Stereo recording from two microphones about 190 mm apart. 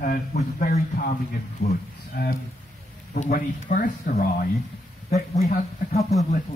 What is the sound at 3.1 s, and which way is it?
Speech, 45° left (ahead or behind).